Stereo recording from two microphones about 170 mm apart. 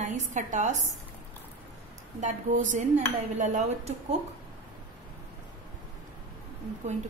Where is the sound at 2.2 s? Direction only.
45° right (ahead or behind).